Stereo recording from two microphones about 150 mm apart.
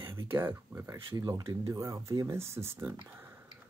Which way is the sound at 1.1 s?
25° right (ahead or behind).